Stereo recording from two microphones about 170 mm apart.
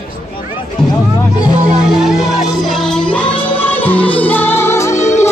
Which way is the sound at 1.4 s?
5° right (ahead or behind).